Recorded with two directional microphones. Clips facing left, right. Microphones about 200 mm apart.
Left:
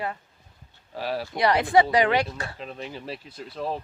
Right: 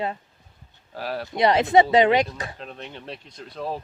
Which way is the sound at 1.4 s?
20° right (ahead or behind).